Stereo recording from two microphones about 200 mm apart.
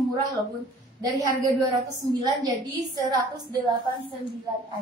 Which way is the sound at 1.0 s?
15° right (ahead or behind).